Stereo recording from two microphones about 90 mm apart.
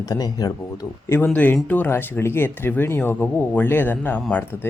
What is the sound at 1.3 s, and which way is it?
Speech, 20° left (ahead or behind).